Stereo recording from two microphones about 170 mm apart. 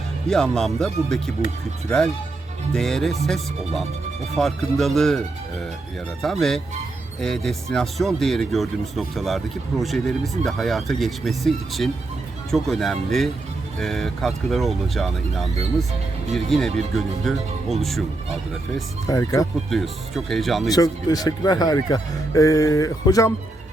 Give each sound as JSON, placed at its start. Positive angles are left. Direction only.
{"t": 0.3, "sound": "speech", "side_deg": 5}
{"t": 2.7, "sound": "speech", "side_deg": 0}
{"t": 6.2, "sound": "speech", "side_deg": 0}
{"t": 19.0, "sound": "speech", "side_deg": 20}
{"t": 19.7, "sound": "speech", "side_deg": 0}
{"t": 20.7, "sound": "speech", "side_deg": 20}